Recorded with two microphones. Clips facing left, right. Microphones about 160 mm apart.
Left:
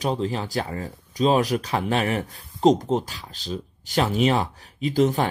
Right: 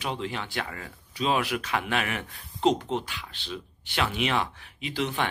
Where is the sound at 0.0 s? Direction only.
40° left (ahead or behind).